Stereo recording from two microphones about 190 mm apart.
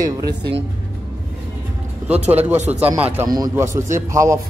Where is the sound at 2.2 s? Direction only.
35° right (ahead or behind).